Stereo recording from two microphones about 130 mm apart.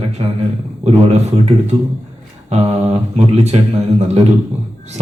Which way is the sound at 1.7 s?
55° right (ahead or behind).